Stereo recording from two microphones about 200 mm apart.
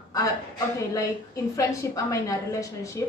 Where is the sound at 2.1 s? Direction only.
15° left (ahead or behind).